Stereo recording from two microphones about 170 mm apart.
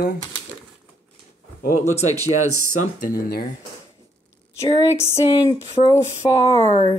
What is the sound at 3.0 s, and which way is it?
Speech, 55° left (ahead or behind).